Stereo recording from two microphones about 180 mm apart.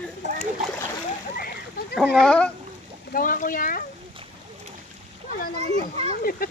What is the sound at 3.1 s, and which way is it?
Speech, 50° left (ahead or behind).